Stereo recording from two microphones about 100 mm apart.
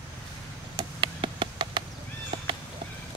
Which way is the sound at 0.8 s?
55° right (ahead or behind).